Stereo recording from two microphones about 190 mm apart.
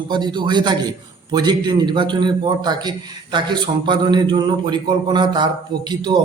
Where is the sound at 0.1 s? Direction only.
25° right (ahead or behind).